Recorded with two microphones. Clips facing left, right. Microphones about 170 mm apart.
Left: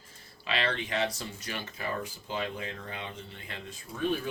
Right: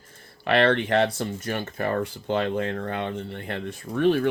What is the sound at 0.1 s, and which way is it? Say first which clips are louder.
Speech: right 11 dB; 60° right (ahead or behind).